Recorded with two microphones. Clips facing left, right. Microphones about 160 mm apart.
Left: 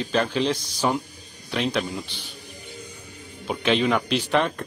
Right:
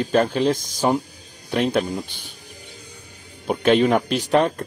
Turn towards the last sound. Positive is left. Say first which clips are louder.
# right 4 dB
turn(degrees=-40)  # may be behind; listen again after turning